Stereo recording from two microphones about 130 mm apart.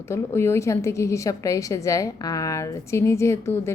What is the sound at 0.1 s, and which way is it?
Speech, 20° left (ahead or behind).